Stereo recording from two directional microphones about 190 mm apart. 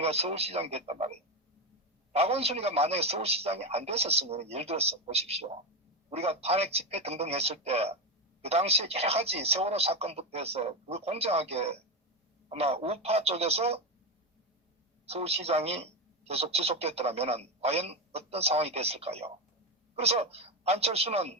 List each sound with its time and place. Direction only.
0.0 s speech: 30° right (ahead or behind)
15.0 s speech: 30° right (ahead or behind)